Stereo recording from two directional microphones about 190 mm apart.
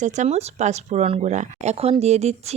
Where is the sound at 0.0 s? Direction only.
35° right (ahead or behind).